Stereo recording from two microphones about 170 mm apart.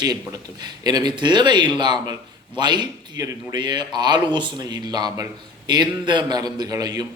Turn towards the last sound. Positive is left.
turn(degrees=-20)  # may be behind; listen again after turning